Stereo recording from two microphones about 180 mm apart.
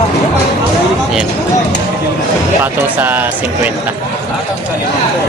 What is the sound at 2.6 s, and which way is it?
Speech, 10° right (ahead or behind).